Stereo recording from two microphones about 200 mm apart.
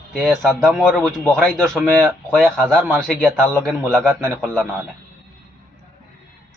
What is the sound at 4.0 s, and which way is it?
Speech, 10° right (ahead or behind).